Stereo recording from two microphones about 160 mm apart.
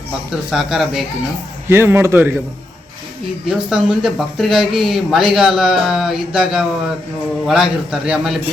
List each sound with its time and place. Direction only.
0.5 s speech: centre (ahead or behind)
1.6 s a man's voice: 15° right (ahead or behind)
3.5 s speech: 5° right (ahead or behind)